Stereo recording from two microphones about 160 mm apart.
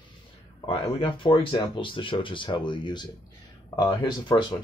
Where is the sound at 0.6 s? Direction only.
35° left (ahead or behind).